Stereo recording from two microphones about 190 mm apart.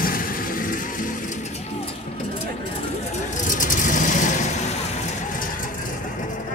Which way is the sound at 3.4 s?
40° left (ahead or behind).